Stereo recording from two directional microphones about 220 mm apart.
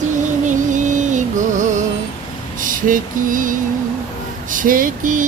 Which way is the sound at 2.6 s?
40° right (ahead or behind).